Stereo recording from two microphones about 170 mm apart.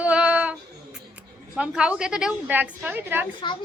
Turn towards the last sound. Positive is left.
turn(degrees=25)  # may be behind; listen again after turning